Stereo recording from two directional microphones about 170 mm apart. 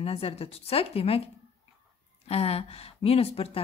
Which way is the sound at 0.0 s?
35° left (ahead or behind).